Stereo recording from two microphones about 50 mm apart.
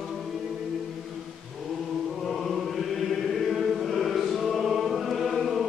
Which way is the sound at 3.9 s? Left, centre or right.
Centre.